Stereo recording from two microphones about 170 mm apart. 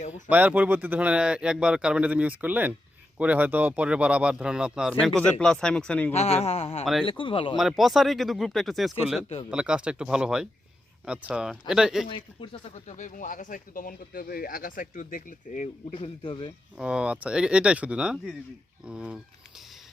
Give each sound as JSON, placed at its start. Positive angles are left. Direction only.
{"t": 0.1, "sound": "speech", "side_deg": -10}
{"t": 6.1, "sound": "a man's voice", "side_deg": 40}
{"t": 7.5, "sound": "speech", "side_deg": 0}
{"t": 12.0, "sound": "speech", "side_deg": 30}
{"t": 15.9, "sound": "a man's voice", "side_deg": 30}
{"t": 16.7, "sound": "speech", "side_deg": -5}